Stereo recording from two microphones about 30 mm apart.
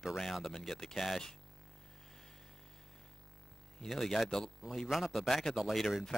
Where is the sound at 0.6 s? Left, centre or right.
Centre.